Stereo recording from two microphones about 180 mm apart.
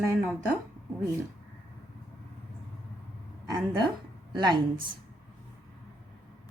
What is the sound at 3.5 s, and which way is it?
A woman's voice, 25° right (ahead or behind).